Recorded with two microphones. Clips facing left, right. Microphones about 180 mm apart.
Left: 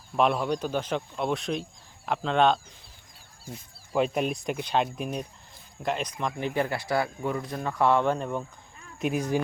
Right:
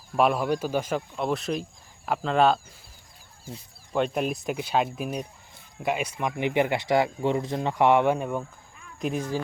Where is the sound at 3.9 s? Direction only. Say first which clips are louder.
Even; centre (ahead or behind).